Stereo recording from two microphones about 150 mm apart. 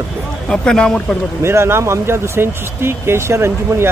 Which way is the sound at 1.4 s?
15° right (ahead or behind).